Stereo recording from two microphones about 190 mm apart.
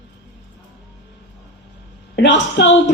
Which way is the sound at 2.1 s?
70° left (ahead or behind).